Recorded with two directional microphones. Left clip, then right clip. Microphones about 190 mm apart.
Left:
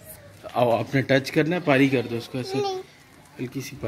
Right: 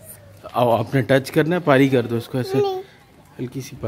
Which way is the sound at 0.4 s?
5° right (ahead or behind).